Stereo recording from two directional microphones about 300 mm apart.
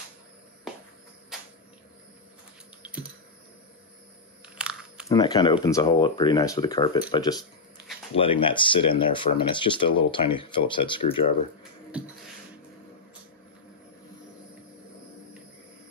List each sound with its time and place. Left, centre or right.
2.8 s typing: centre
4.6 s a sound: centre
5.0 s speech: centre